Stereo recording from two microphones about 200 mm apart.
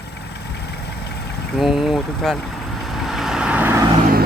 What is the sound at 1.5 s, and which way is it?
Speech, centre (ahead or behind).